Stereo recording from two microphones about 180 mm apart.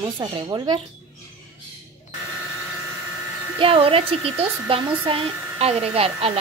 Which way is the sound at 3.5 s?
30° right (ahead or behind).